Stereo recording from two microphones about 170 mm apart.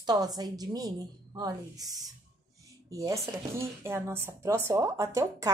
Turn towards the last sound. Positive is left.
turn(degrees=-20)  # may be behind; listen again after turning